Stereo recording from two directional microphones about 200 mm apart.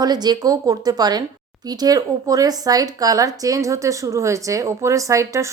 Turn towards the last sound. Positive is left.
turn(degrees=-15)  # may be behind; listen again after turning